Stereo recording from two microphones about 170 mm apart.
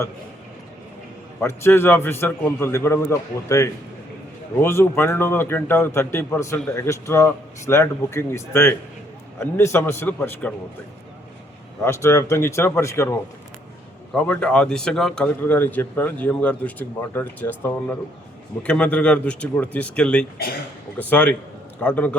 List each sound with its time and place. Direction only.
1.4 s speech: 15° left (ahead or behind)
11.8 s speech: 15° left (ahead or behind)